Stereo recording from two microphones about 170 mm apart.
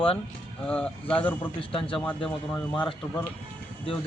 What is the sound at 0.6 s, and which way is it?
A man's voice, 10° left (ahead or behind).